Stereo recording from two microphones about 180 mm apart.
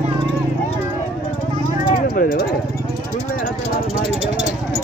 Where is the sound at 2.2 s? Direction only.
55° left (ahead or behind).